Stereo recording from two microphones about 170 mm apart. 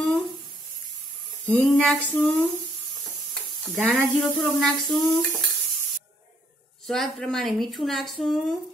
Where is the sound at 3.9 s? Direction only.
Centre (ahead or behind).